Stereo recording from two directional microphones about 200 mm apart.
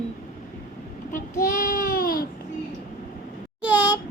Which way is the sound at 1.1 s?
40° left (ahead or behind).